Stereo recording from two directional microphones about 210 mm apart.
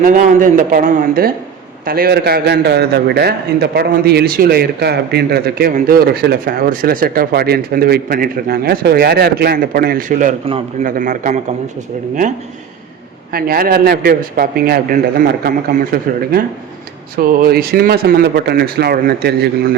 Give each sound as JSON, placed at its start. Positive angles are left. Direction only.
{"t": 0.0, "sound": "a man's voice", "side_deg": -40}
{"t": 13.3, "sound": "a man's voice", "side_deg": -45}